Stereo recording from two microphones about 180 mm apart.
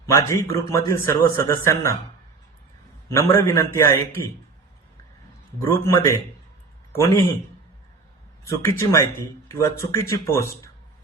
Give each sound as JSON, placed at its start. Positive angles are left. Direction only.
{"t": 0.0, "sound": "a man's voice", "side_deg": 15}
{"t": 3.1, "sound": "a man's voice", "side_deg": 15}
{"t": 5.5, "sound": "a man's voice", "side_deg": 15}
{"t": 8.8, "sound": "a man's voice", "side_deg": 15}